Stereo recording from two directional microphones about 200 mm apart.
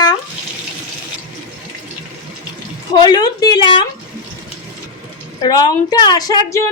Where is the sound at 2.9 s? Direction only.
20° left (ahead or behind).